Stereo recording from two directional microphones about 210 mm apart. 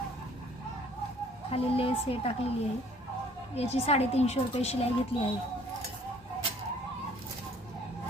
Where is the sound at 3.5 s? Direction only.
30° left (ahead or behind).